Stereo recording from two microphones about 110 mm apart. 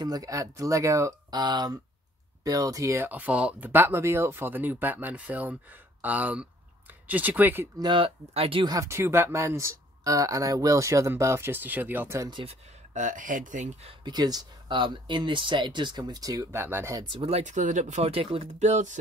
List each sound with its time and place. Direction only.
0.0 s speech: 35° right (ahead or behind); by 7.6 s 15° right (ahead or behind)
7.8 s speech: 50° right (ahead or behind)
8.3 s speech: 60° right (ahead or behind)
8.6 s speech: 30° right (ahead or behind)
12.4 s speech: 50° right (ahead or behind)
13.6 s speech: 70° right (ahead or behind)
14.0 s speech: 40° right (ahead or behind)
16.5 s speech: 20° right (ahead or behind)
17.0 s speech: 45° right (ahead or behind)
17.3 s speech: 90° right